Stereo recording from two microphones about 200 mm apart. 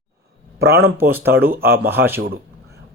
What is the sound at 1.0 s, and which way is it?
Speech, 10° right (ahead or behind).